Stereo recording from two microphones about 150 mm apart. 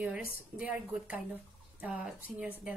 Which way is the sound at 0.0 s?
5° right (ahead or behind).